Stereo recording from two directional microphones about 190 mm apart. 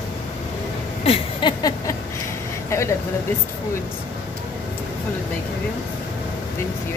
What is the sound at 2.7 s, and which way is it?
Speech, 15° left (ahead or behind).